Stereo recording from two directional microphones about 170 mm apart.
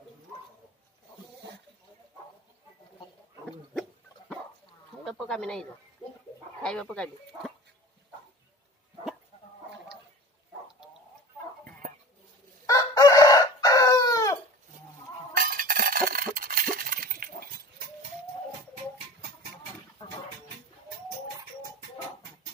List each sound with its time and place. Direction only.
5.0 s bird: 5° left (ahead or behind)
6.6 s speech: 5° left (ahead or behind)
12.6 s chicken: 20° left (ahead or behind)
15.3 s a sound: 55° right (ahead or behind)